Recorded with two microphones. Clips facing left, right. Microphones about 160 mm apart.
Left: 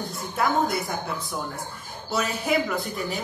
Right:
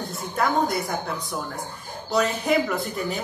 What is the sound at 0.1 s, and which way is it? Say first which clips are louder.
A woman's voice: right 1 dB; centre (ahead or behind).